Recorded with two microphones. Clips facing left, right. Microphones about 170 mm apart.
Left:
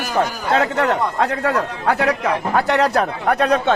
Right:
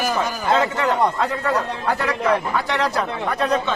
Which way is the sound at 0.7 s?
70° left (ahead or behind).